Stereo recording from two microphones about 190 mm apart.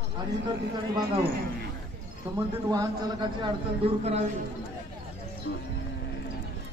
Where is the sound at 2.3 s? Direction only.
20° right (ahead or behind).